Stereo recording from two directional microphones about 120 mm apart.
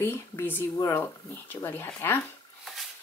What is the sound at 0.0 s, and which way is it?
A woman's voice, 20° left (ahead or behind).